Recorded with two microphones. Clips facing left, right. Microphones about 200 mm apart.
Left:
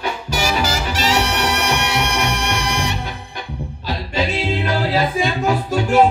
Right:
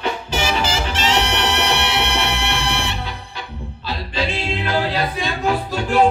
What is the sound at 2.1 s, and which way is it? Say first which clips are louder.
Music: left 1 dB; 45° left (ahead or behind).